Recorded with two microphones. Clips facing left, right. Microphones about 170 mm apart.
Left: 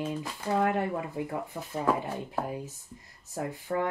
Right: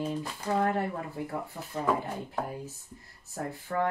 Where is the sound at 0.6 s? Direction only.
15° left (ahead or behind).